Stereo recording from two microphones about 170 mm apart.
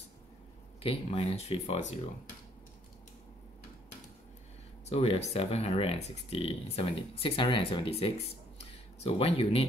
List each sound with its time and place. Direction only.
0.8 s speech: 35° left (ahead or behind)
4.8 s speech: 40° left (ahead or behind)
8.5 s a sound: 35° left (ahead or behind)